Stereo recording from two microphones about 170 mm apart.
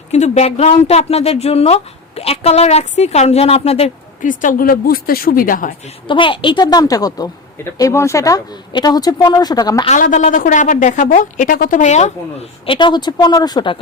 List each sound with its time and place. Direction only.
0.1 s a woman's voice: 40° left (ahead or behind)
6.1 s a woman's voice: 30° left (ahead or behind)
9.8 s a woman's voice: 45° left (ahead or behind)
12.6 s a woman's voice: 30° left (ahead or behind)